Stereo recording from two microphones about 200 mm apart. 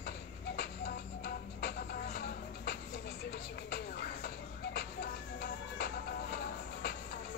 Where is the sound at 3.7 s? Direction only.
50° left (ahead or behind).